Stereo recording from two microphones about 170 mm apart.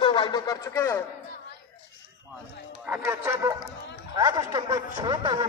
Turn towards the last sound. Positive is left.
turn(degrees=-25)  # may be behind; listen again after turning